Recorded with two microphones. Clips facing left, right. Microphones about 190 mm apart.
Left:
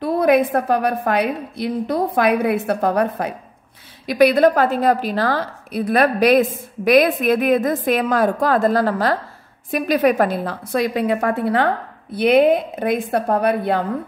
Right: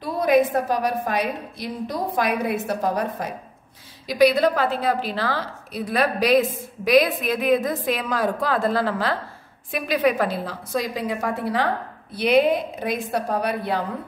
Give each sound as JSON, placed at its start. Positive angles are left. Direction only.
{"t": 0.0, "sound": "a woman's voice", "side_deg": 60}